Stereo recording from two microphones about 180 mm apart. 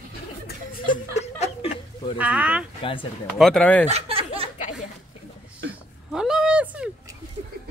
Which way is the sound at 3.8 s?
35° right (ahead or behind).